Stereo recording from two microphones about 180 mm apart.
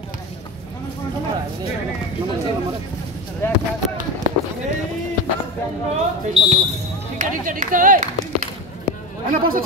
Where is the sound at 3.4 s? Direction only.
15° left (ahead or behind).